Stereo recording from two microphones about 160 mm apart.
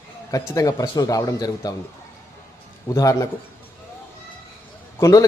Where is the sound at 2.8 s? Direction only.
20° left (ahead or behind).